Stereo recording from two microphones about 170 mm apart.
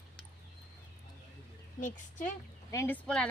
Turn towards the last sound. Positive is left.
turn(degrees=5)  # may be behind; listen again after turning